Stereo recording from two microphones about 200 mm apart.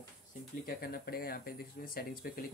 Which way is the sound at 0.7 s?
50° left (ahead or behind).